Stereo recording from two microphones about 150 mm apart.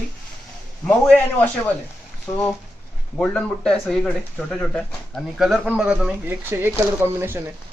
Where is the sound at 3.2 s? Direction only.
5° left (ahead or behind); by 7.4 s 15° right (ahead or behind).